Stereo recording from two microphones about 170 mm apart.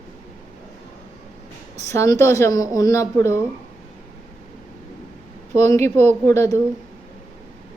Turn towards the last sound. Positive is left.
turn(degrees=15)  # may be behind; listen again after turning